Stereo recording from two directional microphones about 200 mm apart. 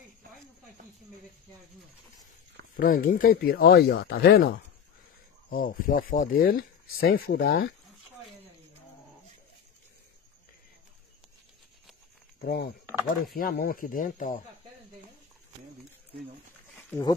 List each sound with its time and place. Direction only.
2.7 s speech: 45° left (ahead or behind)
12.4 s speech: 50° left (ahead or behind)